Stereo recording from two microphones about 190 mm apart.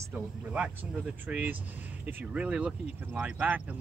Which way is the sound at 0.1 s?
5° right (ahead or behind).